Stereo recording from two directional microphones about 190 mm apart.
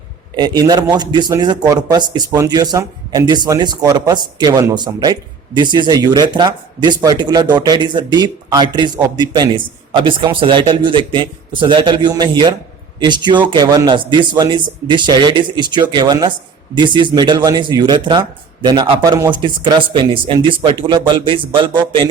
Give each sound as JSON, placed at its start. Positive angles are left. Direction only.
{"t": 0.3, "sound": "speech", "side_deg": -25}